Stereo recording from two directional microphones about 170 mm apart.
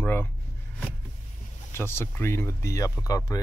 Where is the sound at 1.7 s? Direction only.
15° left (ahead or behind).